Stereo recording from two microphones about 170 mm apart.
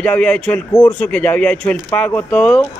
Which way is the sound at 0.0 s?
5° left (ahead or behind).